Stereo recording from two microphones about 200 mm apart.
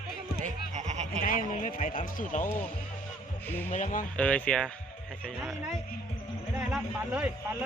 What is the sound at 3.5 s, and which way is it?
Speech, 10° left (ahead or behind).